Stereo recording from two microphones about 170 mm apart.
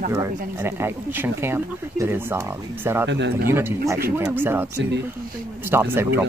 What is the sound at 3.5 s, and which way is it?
Speech, 15° right (ahead or behind).